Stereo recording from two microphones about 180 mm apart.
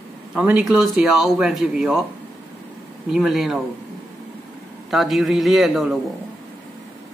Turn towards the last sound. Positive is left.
turn(degrees=0)  # may be behind; listen again after turning